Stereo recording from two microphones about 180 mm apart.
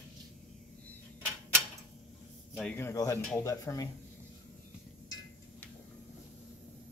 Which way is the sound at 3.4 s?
15° left (ahead or behind).